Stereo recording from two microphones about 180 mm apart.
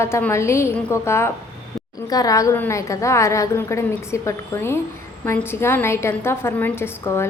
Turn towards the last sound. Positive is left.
turn(degrees=15)  # may be behind; listen again after turning